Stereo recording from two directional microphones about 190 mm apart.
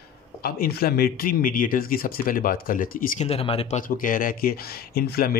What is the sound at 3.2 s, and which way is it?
Speech, 30° left (ahead or behind).